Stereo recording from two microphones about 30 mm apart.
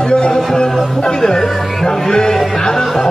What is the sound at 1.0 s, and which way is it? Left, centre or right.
Speech, left.